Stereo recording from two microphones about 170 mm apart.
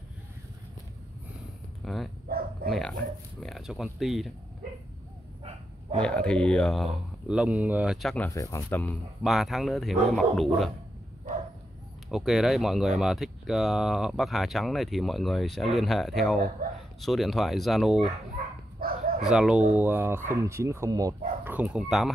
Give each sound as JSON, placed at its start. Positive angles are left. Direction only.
{"t": 1.8, "sound": "speech", "side_deg": 0}
{"t": 2.2, "sound": "dog", "side_deg": -65}
{"t": 2.7, "sound": "speech", "side_deg": 0}
{"t": 5.9, "sound": "speech", "side_deg": 5}
{"t": 8.3, "sound": "speech", "side_deg": 20}
{"t": 9.2, "sound": "speech", "side_deg": 0}
{"t": 12.1, "sound": "speech", "side_deg": 0}
{"t": 18.8, "sound": "dog", "side_deg": -60}
{"t": 19.2, "sound": "speech", "side_deg": -5}
{"t": 21.5, "sound": "speech", "side_deg": -10}